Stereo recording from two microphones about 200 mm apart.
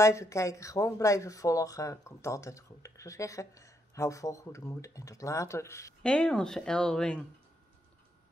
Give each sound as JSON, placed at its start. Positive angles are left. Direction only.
{"t": 0.0, "sound": "speech", "side_deg": 15}